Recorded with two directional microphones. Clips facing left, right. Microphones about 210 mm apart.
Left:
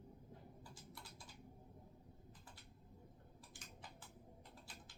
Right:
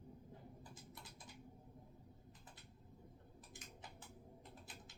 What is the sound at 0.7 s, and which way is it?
Typing, 20° right (ahead or behind).